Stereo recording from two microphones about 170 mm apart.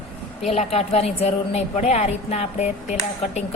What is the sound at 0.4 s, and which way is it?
A woman's voice, 40° left (ahead or behind).